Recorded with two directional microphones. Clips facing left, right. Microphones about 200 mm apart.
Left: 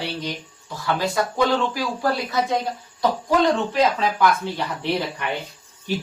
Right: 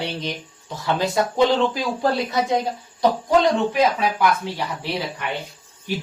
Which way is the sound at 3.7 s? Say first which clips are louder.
Right 1 dB; 10° right (ahead or behind).